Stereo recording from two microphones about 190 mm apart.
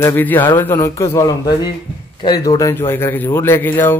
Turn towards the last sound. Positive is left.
turn(degrees=10)  # may be behind; listen again after turning